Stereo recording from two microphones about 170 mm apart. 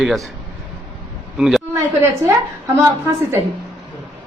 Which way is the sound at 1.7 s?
20° right (ahead or behind).